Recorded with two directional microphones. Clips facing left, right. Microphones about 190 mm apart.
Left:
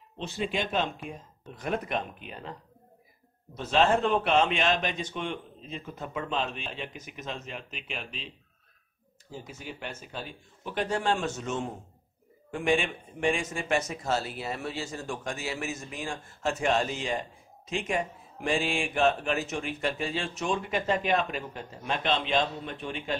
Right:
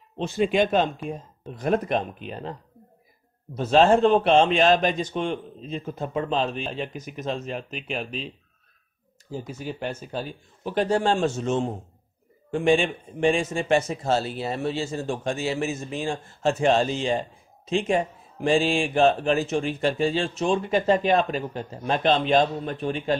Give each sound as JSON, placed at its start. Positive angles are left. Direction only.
{"t": 0.2, "sound": "a man's voice", "side_deg": -55}
{"t": 3.5, "sound": "a man's voice", "side_deg": -35}
{"t": 9.3, "sound": "a man's voice", "side_deg": -35}